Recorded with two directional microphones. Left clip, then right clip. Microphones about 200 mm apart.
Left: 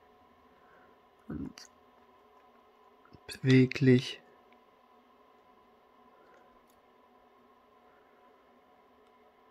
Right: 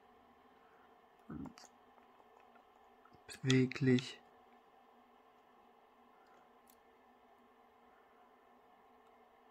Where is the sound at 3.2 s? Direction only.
25° left (ahead or behind).